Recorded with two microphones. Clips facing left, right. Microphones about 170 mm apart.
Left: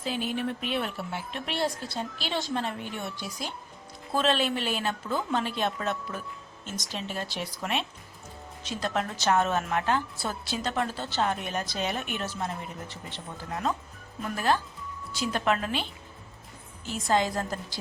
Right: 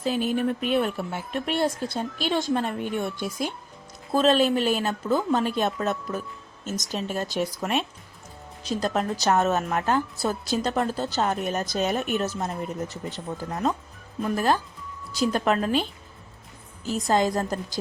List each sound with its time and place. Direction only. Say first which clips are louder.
0.0 s speech: right 6 dB; 45° right (ahead or behind)
4.1 s a woman's voice: right 6 dB; 40° right (ahead or behind)